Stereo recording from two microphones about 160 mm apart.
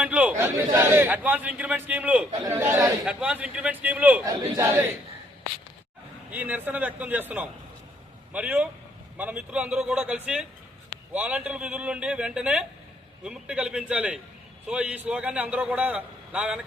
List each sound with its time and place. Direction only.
0.0 s a man's voice: 10° right (ahead or behind)
3.0 s a man's voice: 5° right (ahead or behind)
4.3 s a man's voice: 20° right (ahead or behind)
6.3 s a man's voice: 10° right (ahead or behind)